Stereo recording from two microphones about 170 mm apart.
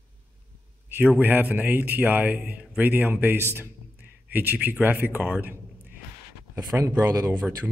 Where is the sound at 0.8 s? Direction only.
10° right (ahead or behind).